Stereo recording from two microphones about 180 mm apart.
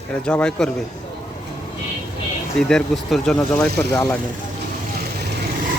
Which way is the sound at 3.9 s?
20° left (ahead or behind).